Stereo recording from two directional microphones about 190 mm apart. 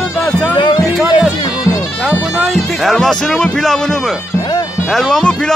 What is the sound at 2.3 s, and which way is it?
Speech, centre (ahead or behind).